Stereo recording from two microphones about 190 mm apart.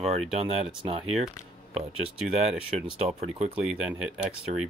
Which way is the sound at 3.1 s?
35° right (ahead or behind).